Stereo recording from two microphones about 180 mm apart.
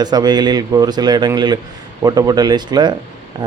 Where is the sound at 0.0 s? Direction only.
20° right (ahead or behind).